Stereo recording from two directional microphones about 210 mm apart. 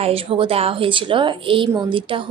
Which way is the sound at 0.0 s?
25° right (ahead or behind).